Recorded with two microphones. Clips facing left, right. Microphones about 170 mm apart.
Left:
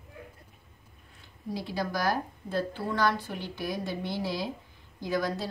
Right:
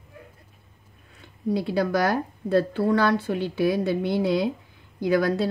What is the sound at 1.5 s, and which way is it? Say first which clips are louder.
A woman's voice: right 9 dB; 65° right (ahead or behind).